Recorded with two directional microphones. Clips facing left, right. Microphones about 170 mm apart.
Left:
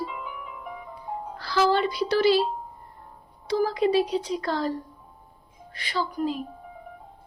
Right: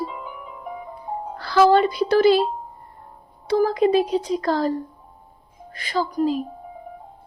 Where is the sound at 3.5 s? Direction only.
50° right (ahead or behind).